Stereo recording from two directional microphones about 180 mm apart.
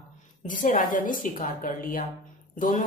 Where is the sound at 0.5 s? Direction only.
45° left (ahead or behind).